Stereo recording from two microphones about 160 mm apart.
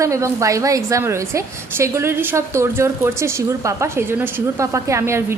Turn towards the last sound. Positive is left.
turn(degrees=-15)  # may be behind; listen again after turning